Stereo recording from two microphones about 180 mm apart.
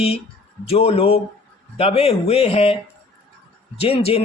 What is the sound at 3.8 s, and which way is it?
Speech, 35° left (ahead or behind).